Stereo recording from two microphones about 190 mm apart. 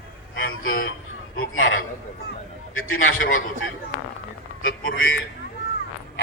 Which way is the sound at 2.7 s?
90° left.